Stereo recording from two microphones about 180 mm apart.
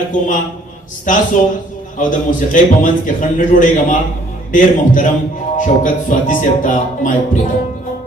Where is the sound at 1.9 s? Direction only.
45° left (ahead or behind).